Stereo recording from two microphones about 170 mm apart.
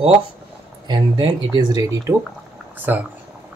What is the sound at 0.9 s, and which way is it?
Speech, 25° right (ahead or behind).